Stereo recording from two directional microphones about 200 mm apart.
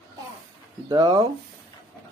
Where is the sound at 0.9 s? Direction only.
20° right (ahead or behind).